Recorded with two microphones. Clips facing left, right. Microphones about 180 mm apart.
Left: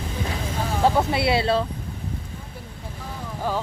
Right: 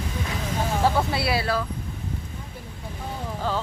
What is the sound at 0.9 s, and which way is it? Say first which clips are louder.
Speech: left 3 dB; 20° left (ahead or behind).